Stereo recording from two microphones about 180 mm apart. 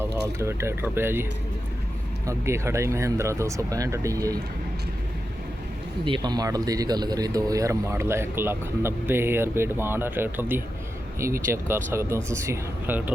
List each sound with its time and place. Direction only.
0.0 s speech: 15° right (ahead or behind)
6.1 s speech: 25° right (ahead or behind)